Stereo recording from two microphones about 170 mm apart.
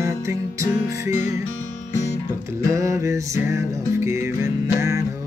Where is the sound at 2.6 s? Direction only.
15° right (ahead or behind).